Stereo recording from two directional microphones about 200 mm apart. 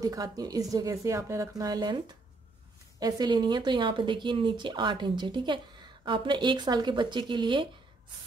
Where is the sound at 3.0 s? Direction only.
20° right (ahead or behind).